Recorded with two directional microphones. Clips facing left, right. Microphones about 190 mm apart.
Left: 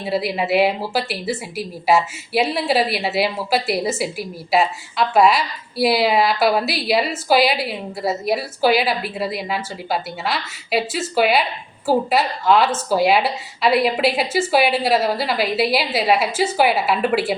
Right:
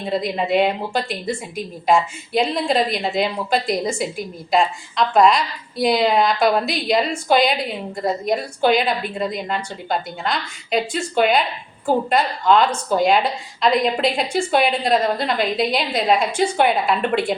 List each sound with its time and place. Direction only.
0.0 s a woman's voice: 5° left (ahead or behind)